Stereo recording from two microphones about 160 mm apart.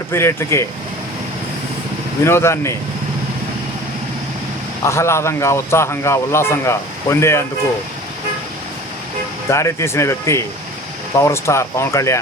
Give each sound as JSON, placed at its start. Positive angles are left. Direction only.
{"t": 0.1, "sound": "a man's voice", "side_deg": 15}
{"t": 2.2, "sound": "a man's voice", "side_deg": 15}
{"t": 4.8, "sound": "a man's voice", "side_deg": 15}
{"t": 9.5, "sound": "a man's voice", "side_deg": 20}